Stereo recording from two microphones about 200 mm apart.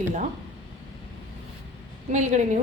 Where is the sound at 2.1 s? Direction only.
35° right (ahead or behind).